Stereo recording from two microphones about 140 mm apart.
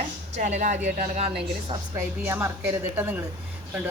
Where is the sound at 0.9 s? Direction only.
70° right (ahead or behind).